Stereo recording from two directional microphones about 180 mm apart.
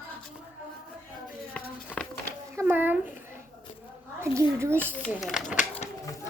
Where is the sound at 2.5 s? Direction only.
10° right (ahead or behind).